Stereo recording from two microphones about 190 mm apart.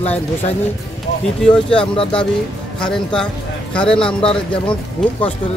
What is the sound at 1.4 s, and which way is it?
Speech, 5° left (ahead or behind).